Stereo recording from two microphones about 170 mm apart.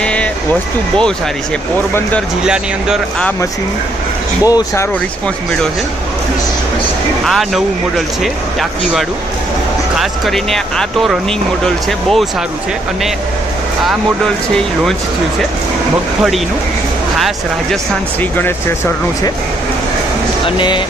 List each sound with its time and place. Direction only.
0.0 s vehicle: 5° left (ahead or behind)
2.4 s speech: 5° right (ahead or behind)
4.5 s speech: 20° left (ahead or behind)
7.2 s speech: centre (ahead or behind)
13.8 s speech: 5° left (ahead or behind)
20.4 s speech: 30° left (ahead or behind)